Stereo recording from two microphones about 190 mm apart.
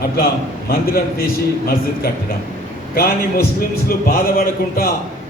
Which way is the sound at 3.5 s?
50° left (ahead or behind).